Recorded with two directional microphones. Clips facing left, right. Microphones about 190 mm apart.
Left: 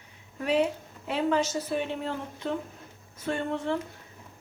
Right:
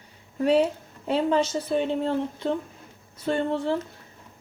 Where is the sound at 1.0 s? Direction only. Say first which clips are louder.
Right 4 dB; 30° right (ahead or behind).